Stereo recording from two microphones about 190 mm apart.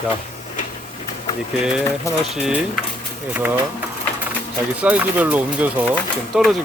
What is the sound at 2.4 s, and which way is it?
Speech, 5° right (ahead or behind).